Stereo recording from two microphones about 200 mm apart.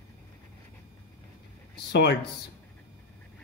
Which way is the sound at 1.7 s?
55° left (ahead or behind).